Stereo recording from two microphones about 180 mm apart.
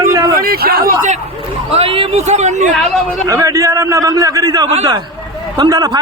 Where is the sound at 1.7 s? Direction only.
30° right (ahead or behind).